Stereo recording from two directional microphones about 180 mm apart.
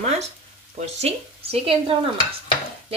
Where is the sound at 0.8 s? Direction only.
35° right (ahead or behind).